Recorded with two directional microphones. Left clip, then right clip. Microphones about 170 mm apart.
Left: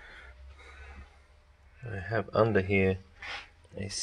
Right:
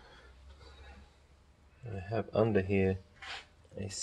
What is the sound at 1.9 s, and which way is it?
Speech, centre (ahead or behind).